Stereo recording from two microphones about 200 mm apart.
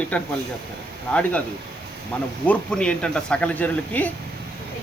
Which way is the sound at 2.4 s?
5° left (ahead or behind).